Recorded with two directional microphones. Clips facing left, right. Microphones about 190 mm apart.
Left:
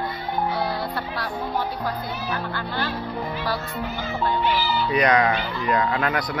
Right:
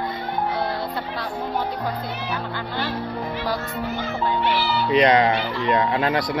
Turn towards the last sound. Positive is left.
turn(degrees=-30)  # may be behind; listen again after turning